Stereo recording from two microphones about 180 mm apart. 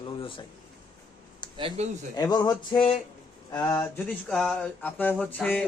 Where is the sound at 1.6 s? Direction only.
35° right (ahead or behind).